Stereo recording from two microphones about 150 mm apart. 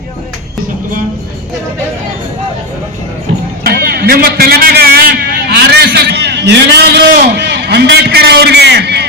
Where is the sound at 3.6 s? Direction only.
80° right.